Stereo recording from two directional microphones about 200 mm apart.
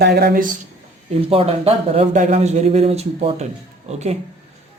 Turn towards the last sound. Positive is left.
turn(degrees=-35)  # may be behind; listen again after turning